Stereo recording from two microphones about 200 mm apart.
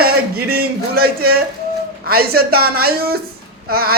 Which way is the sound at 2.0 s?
50° right (ahead or behind).